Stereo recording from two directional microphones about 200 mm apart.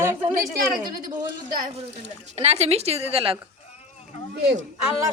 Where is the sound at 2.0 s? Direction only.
30° right (ahead or behind).